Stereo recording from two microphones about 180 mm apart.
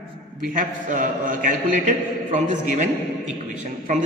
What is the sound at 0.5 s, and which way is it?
A man's voice, 50° right (ahead or behind).